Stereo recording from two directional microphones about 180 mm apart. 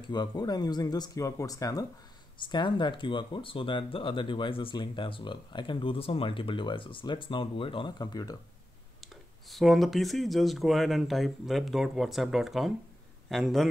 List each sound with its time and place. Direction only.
0.0 s speech: 25° left (ahead or behind)
9.0 s speech: centre (ahead or behind)